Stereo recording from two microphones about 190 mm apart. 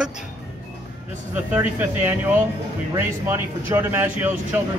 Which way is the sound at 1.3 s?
10° right (ahead or behind).